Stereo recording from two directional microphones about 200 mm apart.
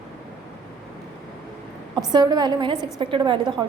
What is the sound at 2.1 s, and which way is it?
A woman's voice, 20° right (ahead or behind).